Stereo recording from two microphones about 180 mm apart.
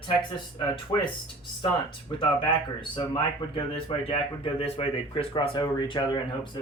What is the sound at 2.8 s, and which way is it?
Speech, 25° left (ahead or behind).